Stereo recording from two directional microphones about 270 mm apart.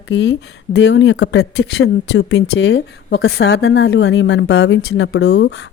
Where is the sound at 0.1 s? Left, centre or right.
Left.